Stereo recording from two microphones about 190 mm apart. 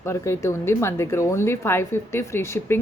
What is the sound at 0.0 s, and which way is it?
Speech, 15° left (ahead or behind).